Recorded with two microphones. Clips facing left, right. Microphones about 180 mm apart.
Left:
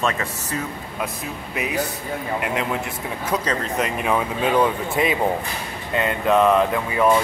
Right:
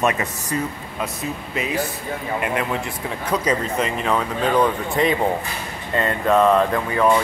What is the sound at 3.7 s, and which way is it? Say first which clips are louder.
Speech: even; 5° left (ahead or behind).